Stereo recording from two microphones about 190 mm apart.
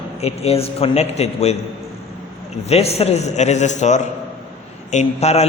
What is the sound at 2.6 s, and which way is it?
A man's voice, 35° left (ahead or behind).